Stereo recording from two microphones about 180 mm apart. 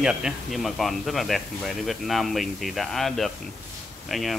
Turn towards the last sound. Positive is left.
turn(degrees=0)  # may be behind; listen again after turning